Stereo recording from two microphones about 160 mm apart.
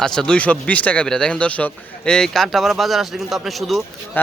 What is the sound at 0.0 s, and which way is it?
A man's voice, 5° left (ahead or behind).